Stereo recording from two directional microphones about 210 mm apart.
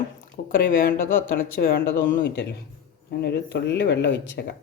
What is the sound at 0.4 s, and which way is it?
Speech, 40° left (ahead or behind).